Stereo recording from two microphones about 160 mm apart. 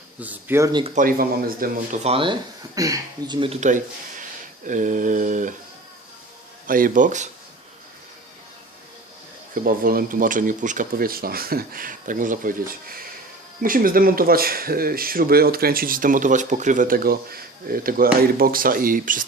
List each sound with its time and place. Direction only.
0.2 s speech: 10° right (ahead or behind)
0.7 s speech: 30° right (ahead or behind)
0.9 s speech: 65° right (ahead or behind)
2.0 s speech: 35° right (ahead or behind)
2.7 s speech: 20° right (ahead or behind)
3.6 s mantra: 50° right (ahead or behind)
6.7 s speech: 60° right (ahead or behind)
9.6 s speech: 65° right (ahead or behind)